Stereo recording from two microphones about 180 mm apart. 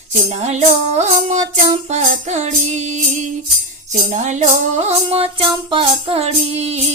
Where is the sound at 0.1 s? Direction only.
40° right (ahead or behind).